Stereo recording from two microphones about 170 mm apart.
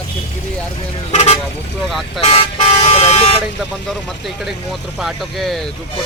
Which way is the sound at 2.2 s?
35° left (ahead or behind).